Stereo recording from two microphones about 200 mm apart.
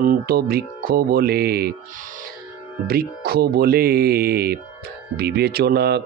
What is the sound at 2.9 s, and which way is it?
Speech, 50° right (ahead or behind).